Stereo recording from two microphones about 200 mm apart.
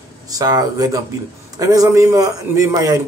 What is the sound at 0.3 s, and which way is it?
A man's voice, 20° right (ahead or behind).